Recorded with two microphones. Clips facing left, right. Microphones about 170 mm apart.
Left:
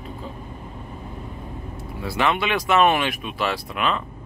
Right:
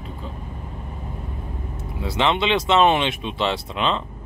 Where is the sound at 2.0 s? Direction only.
20° right (ahead or behind).